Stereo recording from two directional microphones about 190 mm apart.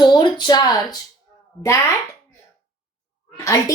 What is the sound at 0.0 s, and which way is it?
Speech, 25° left (ahead or behind).